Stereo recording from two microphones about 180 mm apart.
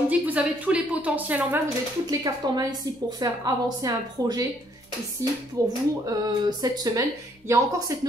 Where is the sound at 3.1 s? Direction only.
20° right (ahead or behind).